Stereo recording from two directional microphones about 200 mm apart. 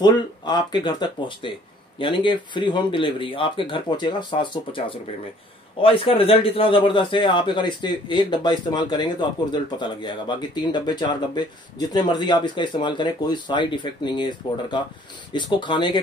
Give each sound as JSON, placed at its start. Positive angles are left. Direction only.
{"t": 0.0, "sound": "a man's voice", "side_deg": 20}